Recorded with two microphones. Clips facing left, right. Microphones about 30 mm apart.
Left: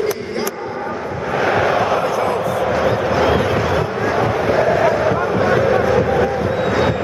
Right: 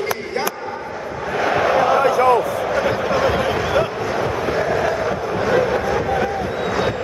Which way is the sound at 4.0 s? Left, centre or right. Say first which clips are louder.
Left 4 dB; centre.